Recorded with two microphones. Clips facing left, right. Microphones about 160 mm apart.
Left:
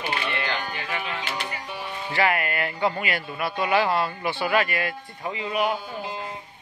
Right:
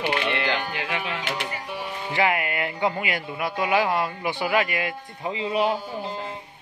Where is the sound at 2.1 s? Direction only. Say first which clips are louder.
Even; 15° right (ahead or behind).